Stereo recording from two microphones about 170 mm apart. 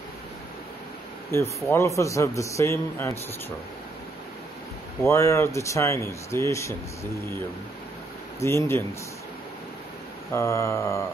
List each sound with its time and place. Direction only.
1.3 s speech: 15° left (ahead or behind)
5.0 s speech: 15° left (ahead or behind)
8.4 s speech: 15° left (ahead or behind)
10.3 s speech: 15° left (ahead or behind)